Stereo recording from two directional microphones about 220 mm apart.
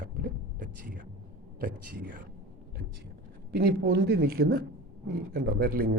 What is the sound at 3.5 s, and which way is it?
A man's voice, 45° right (ahead or behind).